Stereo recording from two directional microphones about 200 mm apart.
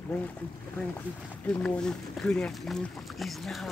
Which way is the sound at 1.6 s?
5° left (ahead or behind).